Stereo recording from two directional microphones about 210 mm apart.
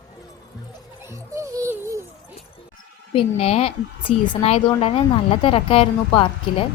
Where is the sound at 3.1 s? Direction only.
30° left (ahead or behind).